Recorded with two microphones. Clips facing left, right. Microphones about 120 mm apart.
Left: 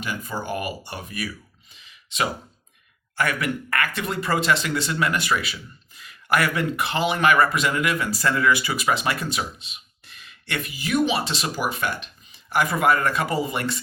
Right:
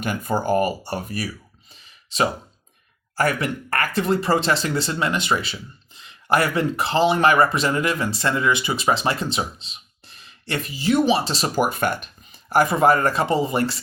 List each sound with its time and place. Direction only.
0.0 s speech: 50° right (ahead or behind)
1.7 s a sound: 35° right (ahead or behind)
3.2 s speech: 35° right (ahead or behind)